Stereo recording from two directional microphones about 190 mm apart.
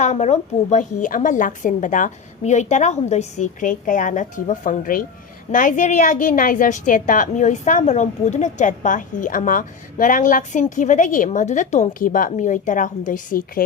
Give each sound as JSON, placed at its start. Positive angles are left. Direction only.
{"t": 0.0, "sound": "a woman's voice", "side_deg": 35}